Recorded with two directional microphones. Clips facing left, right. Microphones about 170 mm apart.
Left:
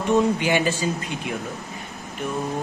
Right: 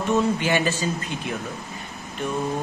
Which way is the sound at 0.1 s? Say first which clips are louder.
Left 2 dB; 15° left (ahead or behind).